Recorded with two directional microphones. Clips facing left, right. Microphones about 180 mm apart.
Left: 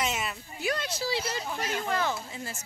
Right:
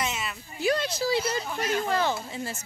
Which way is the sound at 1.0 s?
50° right (ahead or behind).